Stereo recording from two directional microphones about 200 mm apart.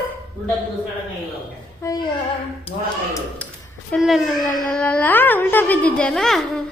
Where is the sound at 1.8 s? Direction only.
15° left (ahead or behind).